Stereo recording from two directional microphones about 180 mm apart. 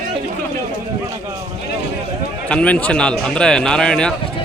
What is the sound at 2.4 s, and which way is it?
A man's voice, 5° left (ahead or behind).